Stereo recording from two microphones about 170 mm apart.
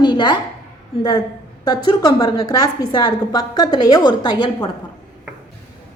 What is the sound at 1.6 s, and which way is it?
A woman's voice, 20° left (ahead or behind).